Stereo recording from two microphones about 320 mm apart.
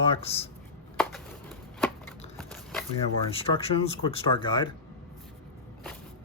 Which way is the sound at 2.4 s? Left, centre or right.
Centre.